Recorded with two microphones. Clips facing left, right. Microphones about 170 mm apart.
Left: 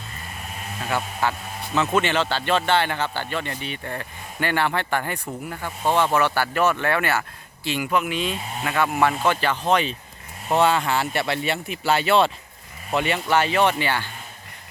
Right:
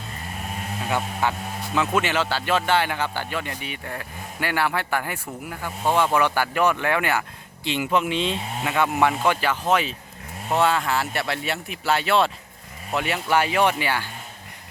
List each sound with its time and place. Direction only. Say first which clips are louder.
1.2 s speech: even; 15° right (ahead or behind)